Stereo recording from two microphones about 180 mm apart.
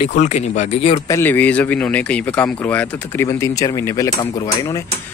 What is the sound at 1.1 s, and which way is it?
A man's voice, 10° left (ahead or behind).